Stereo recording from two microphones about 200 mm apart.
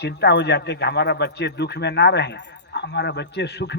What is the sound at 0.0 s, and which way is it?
Speech, 55° left (ahead or behind).